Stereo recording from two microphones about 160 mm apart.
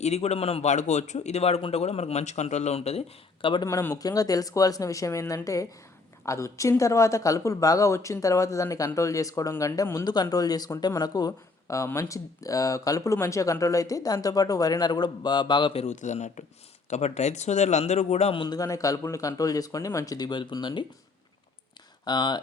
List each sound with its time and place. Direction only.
0.0 s a man's voice: 40° left (ahead or behind)
3.4 s speech: 30° left (ahead or behind)
3.7 s a man's voice: 20° left (ahead or behind); by 18.4 s 40° left (ahead or behind)
18.4 s speech: 20° left (ahead or behind)
22.0 s speech: 25° left (ahead or behind)